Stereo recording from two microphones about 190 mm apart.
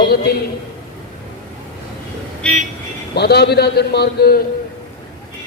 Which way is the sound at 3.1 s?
55° left (ahead or behind).